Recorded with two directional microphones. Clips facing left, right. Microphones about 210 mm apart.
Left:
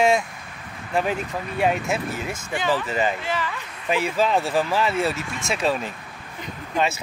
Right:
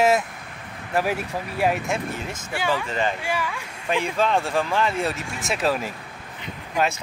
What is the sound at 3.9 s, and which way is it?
Speech, 5° left (ahead or behind).